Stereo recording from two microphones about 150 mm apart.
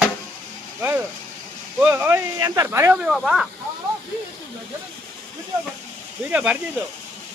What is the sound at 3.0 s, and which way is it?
Speech, centre (ahead or behind).